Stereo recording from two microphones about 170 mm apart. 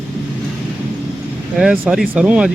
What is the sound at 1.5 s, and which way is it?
Speech, 10° right (ahead or behind).